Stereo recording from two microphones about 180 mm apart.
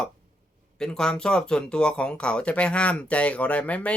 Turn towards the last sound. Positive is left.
turn(degrees=5)  # may be behind; listen again after turning